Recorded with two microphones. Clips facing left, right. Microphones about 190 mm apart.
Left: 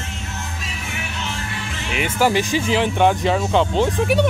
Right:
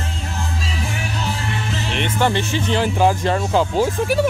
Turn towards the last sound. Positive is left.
turn(degrees=-5)  # may be behind; listen again after turning